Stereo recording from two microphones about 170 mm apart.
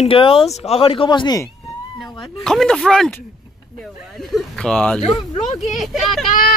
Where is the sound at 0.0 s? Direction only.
30° left (ahead or behind).